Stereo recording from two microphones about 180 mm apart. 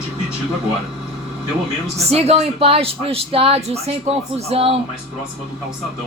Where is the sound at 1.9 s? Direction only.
35° right (ahead or behind).